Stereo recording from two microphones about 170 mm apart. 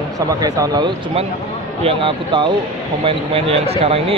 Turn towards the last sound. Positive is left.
turn(degrees=-35)  # may be behind; listen again after turning